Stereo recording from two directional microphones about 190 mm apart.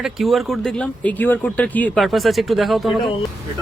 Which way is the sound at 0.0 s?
Centre (ahead or behind).